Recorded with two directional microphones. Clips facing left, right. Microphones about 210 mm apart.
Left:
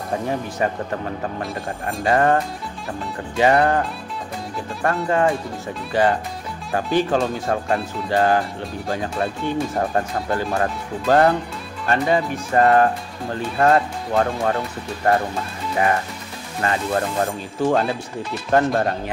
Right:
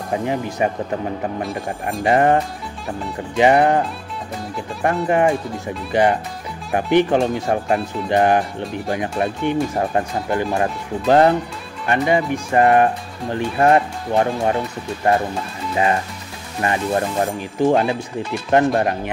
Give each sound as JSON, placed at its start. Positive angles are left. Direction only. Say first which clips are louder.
{"t": 0.1, "sound": "speech", "louder": "right 3 dB", "side_deg": -15}
{"t": 2.0, "sound": "speech", "louder": "right 2 dB", "side_deg": -20}
{"t": 5.0, "sound": "speech", "louder": "right 2 dB", "side_deg": -15}
{"t": 6.7, "sound": "speech", "louder": "right 4 dB", "side_deg": -20}
{"t": 16.6, "sound": "speech", "louder": "right 2 dB", "side_deg": -20}